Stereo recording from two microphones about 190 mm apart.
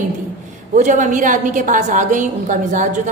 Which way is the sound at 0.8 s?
40° right (ahead or behind).